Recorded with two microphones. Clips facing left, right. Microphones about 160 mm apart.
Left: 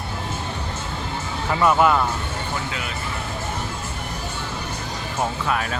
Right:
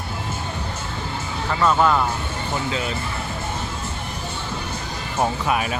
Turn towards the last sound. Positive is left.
turn(degrees=-15)  # may be behind; listen again after turning